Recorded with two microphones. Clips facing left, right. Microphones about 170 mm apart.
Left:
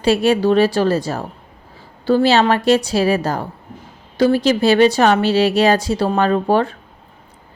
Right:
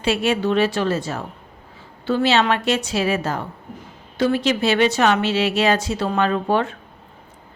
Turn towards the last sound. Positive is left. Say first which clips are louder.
# left 4 dB
turn(degrees=35)  # may be behind; listen again after turning